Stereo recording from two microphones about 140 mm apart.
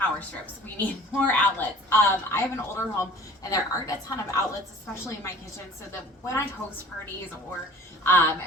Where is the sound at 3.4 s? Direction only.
25° left (ahead or behind).